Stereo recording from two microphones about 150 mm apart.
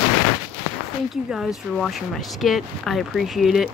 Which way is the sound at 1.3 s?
Centre (ahead or behind).